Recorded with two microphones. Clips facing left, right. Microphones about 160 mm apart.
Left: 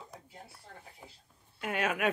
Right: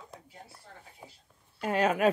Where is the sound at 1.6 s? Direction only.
35° right (ahead or behind).